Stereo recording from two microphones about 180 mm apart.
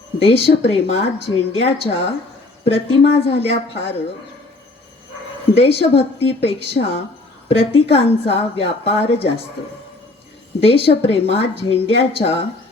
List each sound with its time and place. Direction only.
0.2 s speech: 30° left (ahead or behind)
5.5 s speech: 35° left (ahead or behind)
10.6 s speech: 30° left (ahead or behind)